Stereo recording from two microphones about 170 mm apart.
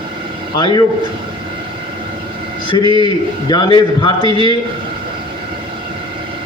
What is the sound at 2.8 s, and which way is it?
Speech, 30° right (ahead or behind).